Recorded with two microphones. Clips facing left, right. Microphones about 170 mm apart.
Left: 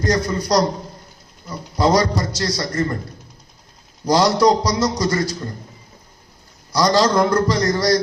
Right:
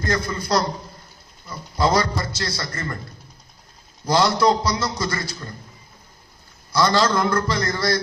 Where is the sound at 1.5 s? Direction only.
15° left (ahead or behind).